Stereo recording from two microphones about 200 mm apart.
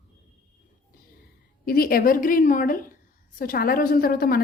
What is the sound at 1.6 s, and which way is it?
A woman's voice, 45° left (ahead or behind).